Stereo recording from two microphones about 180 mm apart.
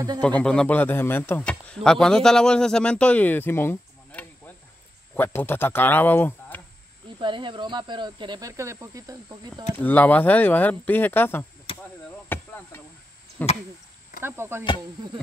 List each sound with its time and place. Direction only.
0.2 s a man's voice: 5° left (ahead or behind)
7.2 s speech: 25° right (ahead or behind)
9.8 s a man's voice: 10° left (ahead or behind)
12.3 s a sound: 10° left (ahead or behind)
13.4 s a man's voice: 10° left (ahead or behind)
14.2 s speech: 15° right (ahead or behind)